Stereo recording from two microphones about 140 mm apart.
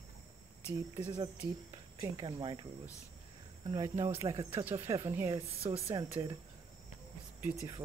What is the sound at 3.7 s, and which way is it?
Speech, 30° right (ahead or behind).